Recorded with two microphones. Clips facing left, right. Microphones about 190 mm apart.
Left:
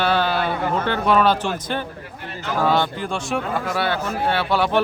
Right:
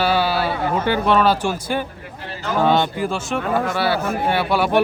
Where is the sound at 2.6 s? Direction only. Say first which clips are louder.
Right 2 dB; 25° right (ahead or behind).